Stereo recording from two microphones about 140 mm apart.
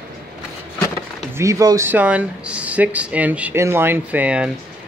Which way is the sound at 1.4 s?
25° right (ahead or behind).